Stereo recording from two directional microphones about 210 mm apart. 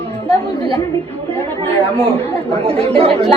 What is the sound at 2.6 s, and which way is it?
Speech, 25° right (ahead or behind).